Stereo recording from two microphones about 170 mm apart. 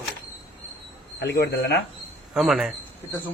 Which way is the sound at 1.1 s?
85° left.